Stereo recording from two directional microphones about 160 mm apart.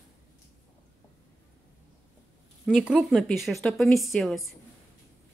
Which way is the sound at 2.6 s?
5° right (ahead or behind).